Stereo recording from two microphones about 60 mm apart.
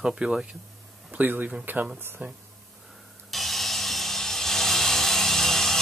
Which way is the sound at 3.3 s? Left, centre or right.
Centre.